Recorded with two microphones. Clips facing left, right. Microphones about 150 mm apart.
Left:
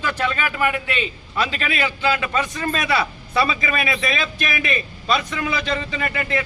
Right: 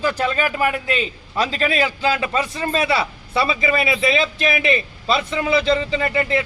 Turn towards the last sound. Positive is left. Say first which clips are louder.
# right 4 dB
turn(degrees=-30)  # may be behind; listen again after turning